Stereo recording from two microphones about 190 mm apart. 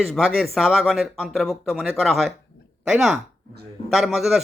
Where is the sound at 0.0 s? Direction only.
Centre (ahead or behind).